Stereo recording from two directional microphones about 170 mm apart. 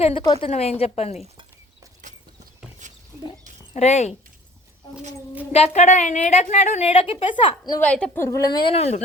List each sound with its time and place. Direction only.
0.0 s a woman's voice: 30° left (ahead or behind)
2.8 s a sound: 45° right (ahead or behind)
3.8 s a woman's voice: 40° left (ahead or behind)
5.5 s a woman's voice: 40° left (ahead or behind)
7.8 s a woman's voice: 5° left (ahead or behind); by 9.0 s 35° left (ahead or behind)